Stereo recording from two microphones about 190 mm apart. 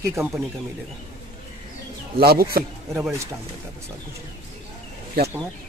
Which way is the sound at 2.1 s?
55° right (ahead or behind).